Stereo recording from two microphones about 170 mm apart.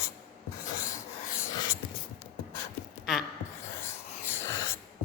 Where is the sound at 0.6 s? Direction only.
20° left (ahead or behind).